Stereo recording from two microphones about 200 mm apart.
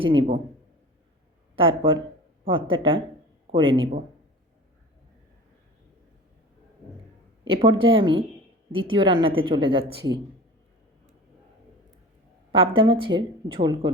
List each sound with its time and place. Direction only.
0.0 s a woman's voice: 25° right (ahead or behind)
1.5 s a woman's voice: 25° right (ahead or behind)
7.4 s a woman's voice: 25° right (ahead or behind)
12.5 s a woman's voice: 25° right (ahead or behind)